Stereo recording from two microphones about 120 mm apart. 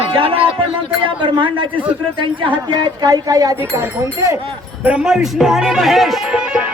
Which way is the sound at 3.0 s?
30° right (ahead or behind).